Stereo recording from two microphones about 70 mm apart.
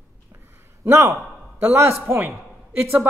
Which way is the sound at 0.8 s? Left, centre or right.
Right.